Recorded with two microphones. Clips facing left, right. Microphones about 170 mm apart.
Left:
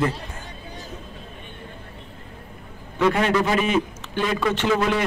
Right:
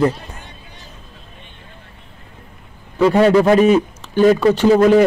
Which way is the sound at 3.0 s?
35° right (ahead or behind).